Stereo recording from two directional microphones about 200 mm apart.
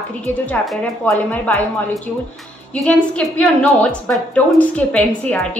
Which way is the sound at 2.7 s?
5° left (ahead or behind).